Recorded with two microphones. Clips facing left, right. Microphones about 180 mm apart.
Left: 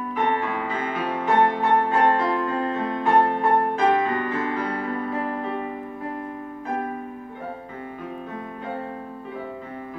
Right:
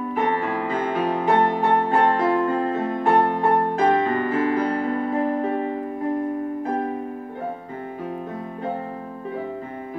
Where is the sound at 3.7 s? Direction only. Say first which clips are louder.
Right 2 dB; 40° right (ahead or behind).